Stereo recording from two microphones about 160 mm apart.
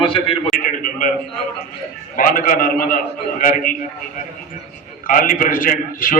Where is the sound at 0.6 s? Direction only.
60° left (ahead or behind).